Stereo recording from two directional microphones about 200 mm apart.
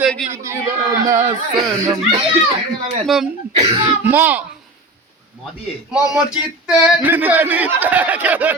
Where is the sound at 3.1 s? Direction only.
Centre (ahead or behind).